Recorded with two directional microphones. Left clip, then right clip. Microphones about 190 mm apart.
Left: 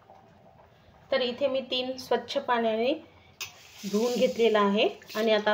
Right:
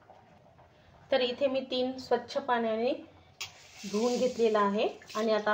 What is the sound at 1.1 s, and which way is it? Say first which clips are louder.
A woman's voice: left 1 dB; centre (ahead or behind).